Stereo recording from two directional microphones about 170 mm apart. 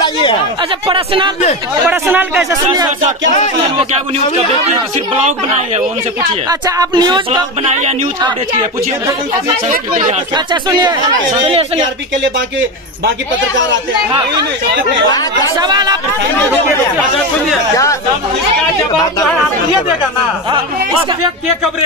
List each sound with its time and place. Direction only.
0.0 s chatter: 30° left (ahead or behind)
0.8 s a woman's voice: 30° right (ahead or behind)
1.9 s speech: 10° right (ahead or behind)
5.1 s a woman's voice: 40° right (ahead or behind)
6.6 s a sound: 25° right (ahead or behind)
10.3 s a sound: 25° right (ahead or behind)
11.4 s a woman's voice: 35° right (ahead or behind)
15.0 s speech: 25° left (ahead or behind)
15.5 s a sound: 25° right (ahead or behind)